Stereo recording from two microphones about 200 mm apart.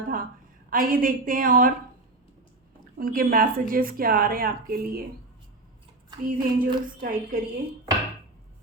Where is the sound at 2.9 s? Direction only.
45° right (ahead or behind).